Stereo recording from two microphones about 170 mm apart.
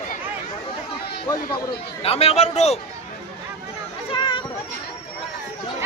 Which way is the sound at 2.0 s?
35° left (ahead or behind).